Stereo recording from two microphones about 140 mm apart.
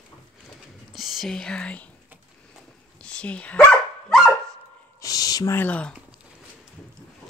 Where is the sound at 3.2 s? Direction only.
10° left (ahead or behind).